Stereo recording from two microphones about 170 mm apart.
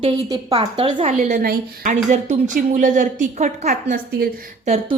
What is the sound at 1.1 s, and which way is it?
Speech, 55° right (ahead or behind).